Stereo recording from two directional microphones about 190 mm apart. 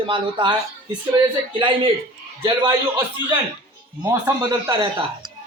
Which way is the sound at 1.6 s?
25° right (ahead or behind).